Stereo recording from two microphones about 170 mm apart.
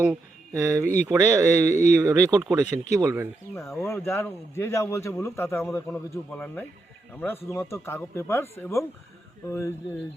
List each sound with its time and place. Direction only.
0.5 s speech: 20° right (ahead or behind)
1.6 s speech: 45° left (ahead or behind)
2.0 s speech: 20° right (ahead or behind)
3.8 s speech: 15° left (ahead or behind)